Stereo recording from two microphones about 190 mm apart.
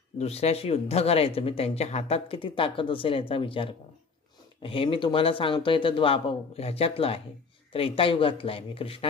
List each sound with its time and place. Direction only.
0.2 s speech: 35° left (ahead or behind)